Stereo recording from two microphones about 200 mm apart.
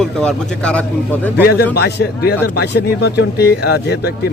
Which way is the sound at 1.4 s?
55° left (ahead or behind).